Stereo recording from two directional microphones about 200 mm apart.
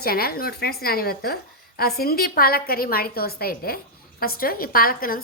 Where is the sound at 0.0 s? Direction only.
50° left (ahead or behind).